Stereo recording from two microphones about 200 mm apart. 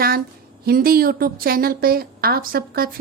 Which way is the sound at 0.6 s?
50° right (ahead or behind).